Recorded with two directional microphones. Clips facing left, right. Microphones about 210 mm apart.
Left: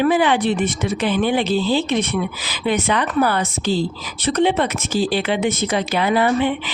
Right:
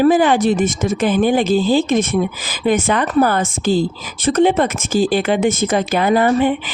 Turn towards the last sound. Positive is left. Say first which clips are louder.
# right 3 dB
turn(degrees=-45)  # may be behind; listen again after turning